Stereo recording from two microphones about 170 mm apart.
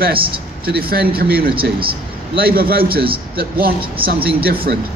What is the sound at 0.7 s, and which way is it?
A man's voice, 65° right (ahead or behind).